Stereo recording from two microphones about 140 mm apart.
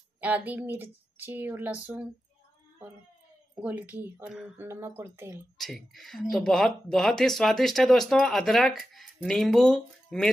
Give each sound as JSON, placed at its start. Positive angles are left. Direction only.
{"t": 0.2, "sound": "speech", "side_deg": -10}
{"t": 3.5, "sound": "speech", "side_deg": -10}
{"t": 4.6, "sound": "speech", "side_deg": -15}
{"t": 5.6, "sound": "speech", "side_deg": 0}